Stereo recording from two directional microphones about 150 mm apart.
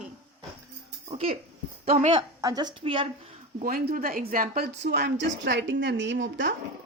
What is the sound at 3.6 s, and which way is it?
A woman's voice, 75° right (ahead or behind).